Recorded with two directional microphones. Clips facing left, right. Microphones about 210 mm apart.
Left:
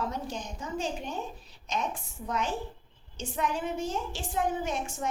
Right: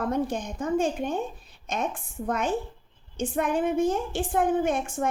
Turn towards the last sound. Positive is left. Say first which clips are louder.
# right 7 dB
turn(degrees=-55)  # may be behind; listen again after turning